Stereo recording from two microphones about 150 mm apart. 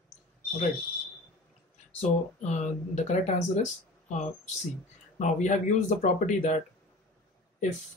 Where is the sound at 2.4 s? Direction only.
50° left (ahead or behind).